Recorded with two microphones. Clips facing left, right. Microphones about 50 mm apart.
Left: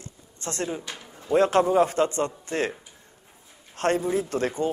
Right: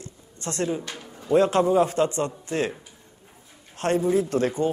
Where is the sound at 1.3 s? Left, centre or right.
Left.